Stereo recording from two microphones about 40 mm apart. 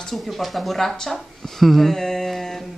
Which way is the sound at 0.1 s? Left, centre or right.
Centre.